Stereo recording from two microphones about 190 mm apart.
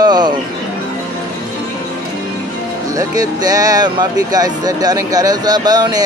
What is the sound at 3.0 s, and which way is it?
Speech, 20° right (ahead or behind).